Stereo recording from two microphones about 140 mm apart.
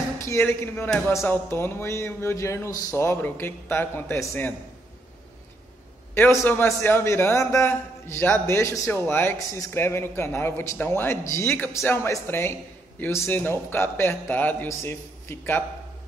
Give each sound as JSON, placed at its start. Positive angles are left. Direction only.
{"t": 0.2, "sound": "a man's voice", "side_deg": 20}
{"t": 6.1, "sound": "a man's voice", "side_deg": 15}